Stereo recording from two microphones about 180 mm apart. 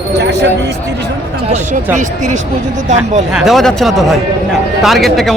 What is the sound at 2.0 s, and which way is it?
Speech, 40° right (ahead or behind).